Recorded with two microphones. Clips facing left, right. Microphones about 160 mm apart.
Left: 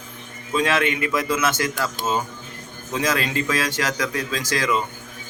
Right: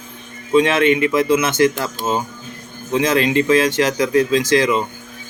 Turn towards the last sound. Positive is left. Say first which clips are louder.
# right 8 dB
turn(degrees=-25)  # may be behind; listen again after turning